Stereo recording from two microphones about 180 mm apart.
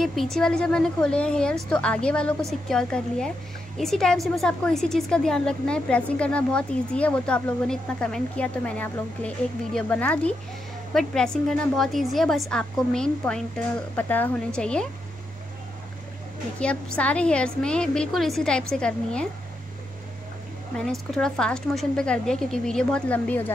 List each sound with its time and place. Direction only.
0.0 s a woman's voice: centre (ahead or behind)
16.5 s a woman's voice: 5° left (ahead or behind)
20.7 s a woman's voice: 5° left (ahead or behind)